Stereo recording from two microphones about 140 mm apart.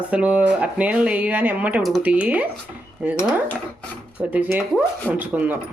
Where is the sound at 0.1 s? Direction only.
10° right (ahead or behind).